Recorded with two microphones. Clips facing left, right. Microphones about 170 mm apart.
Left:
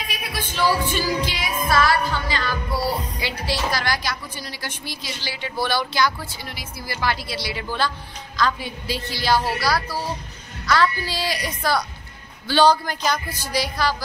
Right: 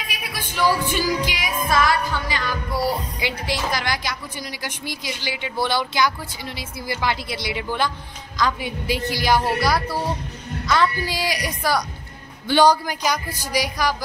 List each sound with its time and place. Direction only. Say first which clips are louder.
0.3 s music: right 1 dB; 15° right (ahead or behind)
3.2 s a woman's voice: even; 20° right (ahead or behind)
8.4 s music: even; 15° right (ahead or behind)
9.6 s a woman's voice: right 2 dB; 20° right (ahead or behind)
10.7 s music: even; 15° right (ahead or behind)